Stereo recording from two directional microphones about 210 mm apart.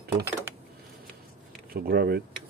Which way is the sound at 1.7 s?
50° right (ahead or behind).